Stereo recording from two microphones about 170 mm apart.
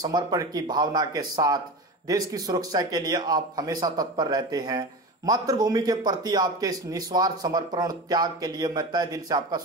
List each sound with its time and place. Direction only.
0.0 s a man's voice: 20° right (ahead or behind)